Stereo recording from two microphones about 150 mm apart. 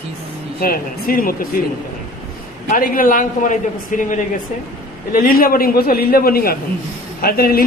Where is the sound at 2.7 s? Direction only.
70° left (ahead or behind).